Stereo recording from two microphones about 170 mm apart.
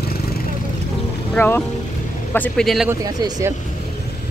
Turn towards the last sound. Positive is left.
turn(degrees=-20)  # may be behind; listen again after turning